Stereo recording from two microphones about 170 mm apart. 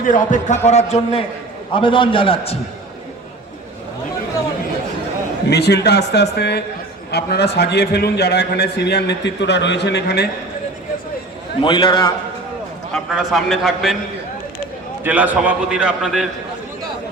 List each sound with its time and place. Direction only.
0.0 s a man's voice: 50° left (ahead or behind); by 2.6 s 35° left (ahead or behind)
5.5 s a man's voice: 75° left (ahead or behind)
11.6 s a man's voice: 25° left (ahead or behind)
12.9 s a man's voice: centre (ahead or behind)
15.0 s a man's voice: 10° right (ahead or behind)